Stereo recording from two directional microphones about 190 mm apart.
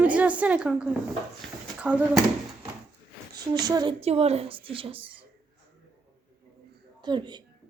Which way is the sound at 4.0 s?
35° right (ahead or behind).